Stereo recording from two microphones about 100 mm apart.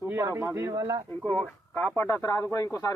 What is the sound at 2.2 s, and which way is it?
Speech, 35° left (ahead or behind).